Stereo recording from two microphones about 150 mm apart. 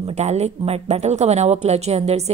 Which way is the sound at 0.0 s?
45° right (ahead or behind).